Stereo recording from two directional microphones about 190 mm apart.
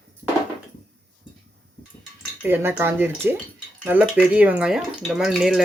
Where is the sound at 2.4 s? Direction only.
10° right (ahead or behind).